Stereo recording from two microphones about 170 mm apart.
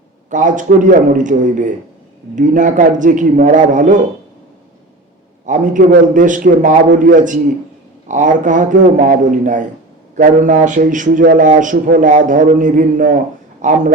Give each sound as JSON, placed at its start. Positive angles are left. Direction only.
{"t": 0.3, "sound": "speech", "side_deg": -50}
{"t": 5.5, "sound": "speech", "side_deg": -50}